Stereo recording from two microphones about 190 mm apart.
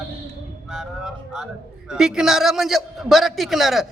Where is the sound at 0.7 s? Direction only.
Centre (ahead or behind).